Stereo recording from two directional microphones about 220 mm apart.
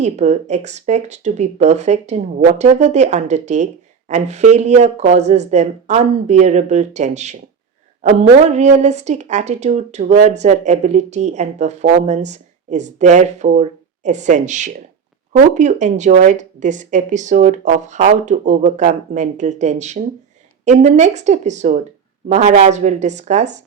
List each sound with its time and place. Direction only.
0.0 s a woman's voice: 30° right (ahead or behind)